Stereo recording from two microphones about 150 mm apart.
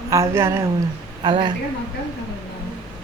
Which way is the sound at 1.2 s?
35° right (ahead or behind).